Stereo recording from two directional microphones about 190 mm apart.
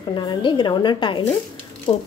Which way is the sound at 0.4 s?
25° left (ahead or behind).